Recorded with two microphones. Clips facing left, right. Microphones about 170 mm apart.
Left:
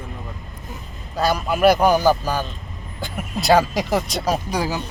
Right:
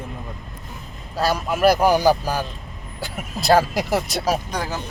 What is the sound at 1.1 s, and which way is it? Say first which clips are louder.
Speech: left 1 dB; centre (ahead or behind).